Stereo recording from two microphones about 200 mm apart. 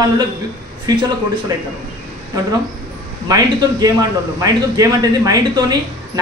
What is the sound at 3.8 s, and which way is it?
A man's voice, 20° right (ahead or behind).